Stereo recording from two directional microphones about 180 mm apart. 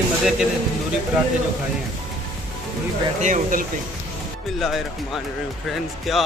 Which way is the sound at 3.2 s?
45° right (ahead or behind).